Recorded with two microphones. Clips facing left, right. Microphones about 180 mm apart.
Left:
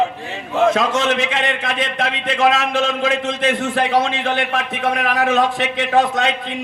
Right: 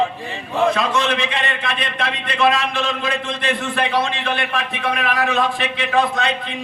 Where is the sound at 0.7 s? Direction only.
40° left (ahead or behind).